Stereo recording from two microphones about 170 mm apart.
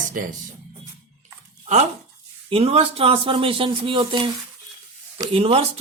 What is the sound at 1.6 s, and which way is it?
A man's voice, 40° right (ahead or behind).